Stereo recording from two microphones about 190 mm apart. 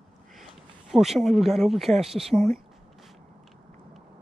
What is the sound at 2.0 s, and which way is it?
Speech, 30° right (ahead or behind).